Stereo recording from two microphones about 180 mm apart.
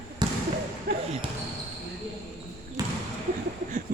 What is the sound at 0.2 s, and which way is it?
Basketball bounce, 25° right (ahead or behind).